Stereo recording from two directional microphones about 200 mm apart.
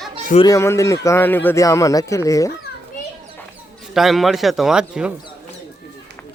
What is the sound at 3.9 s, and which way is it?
Speech, centre (ahead or behind).